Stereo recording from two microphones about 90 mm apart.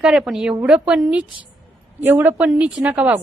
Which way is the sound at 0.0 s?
5° right (ahead or behind).